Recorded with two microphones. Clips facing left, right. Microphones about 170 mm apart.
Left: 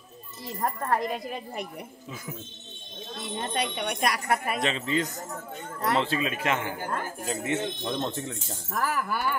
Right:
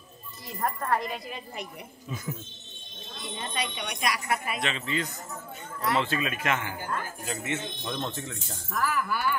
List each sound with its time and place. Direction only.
0.8 s speech: 45° left (ahead or behind)
3.2 s speech: 55° left (ahead or behind)